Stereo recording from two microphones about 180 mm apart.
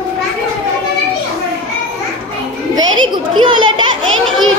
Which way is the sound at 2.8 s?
25° right (ahead or behind).